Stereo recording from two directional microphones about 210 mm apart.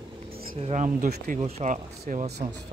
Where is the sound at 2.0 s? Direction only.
45° right (ahead or behind).